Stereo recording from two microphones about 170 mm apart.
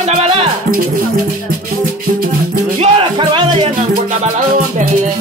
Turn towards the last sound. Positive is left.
turn(degrees=-30)  # may be behind; listen again after turning